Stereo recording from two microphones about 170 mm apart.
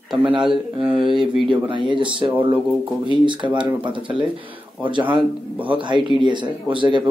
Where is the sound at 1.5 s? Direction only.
30° right (ahead or behind).